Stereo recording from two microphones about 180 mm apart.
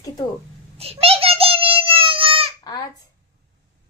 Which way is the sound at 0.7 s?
35° right (ahead or behind).